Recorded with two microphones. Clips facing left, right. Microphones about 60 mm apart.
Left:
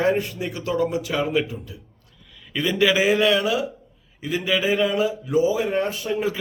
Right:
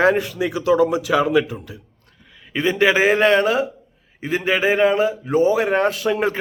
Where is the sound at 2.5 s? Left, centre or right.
Right.